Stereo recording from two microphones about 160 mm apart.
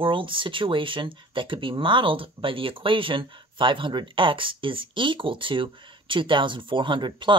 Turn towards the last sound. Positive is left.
turn(degrees=-30)  # may be behind; listen again after turning